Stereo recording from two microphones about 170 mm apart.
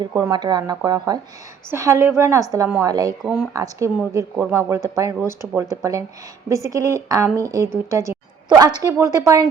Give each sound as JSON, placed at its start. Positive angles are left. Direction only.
{"t": 0.0, "sound": "a woman's voice", "side_deg": -20}
{"t": 2.9, "sound": "a woman's voice", "side_deg": -25}